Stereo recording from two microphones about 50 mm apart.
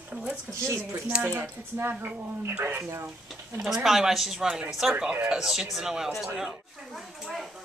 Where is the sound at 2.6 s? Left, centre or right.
Right.